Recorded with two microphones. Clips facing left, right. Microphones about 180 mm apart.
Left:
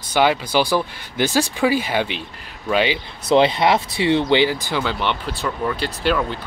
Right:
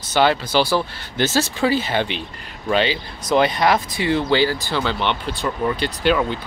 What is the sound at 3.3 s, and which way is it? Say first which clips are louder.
Speech: left 2 dB; 25° left (ahead or behind).